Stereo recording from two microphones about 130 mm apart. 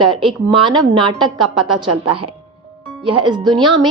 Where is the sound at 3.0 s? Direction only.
35° right (ahead or behind).